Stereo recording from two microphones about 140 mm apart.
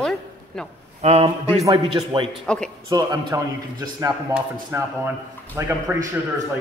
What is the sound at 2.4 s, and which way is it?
Speech, 5° left (ahead or behind).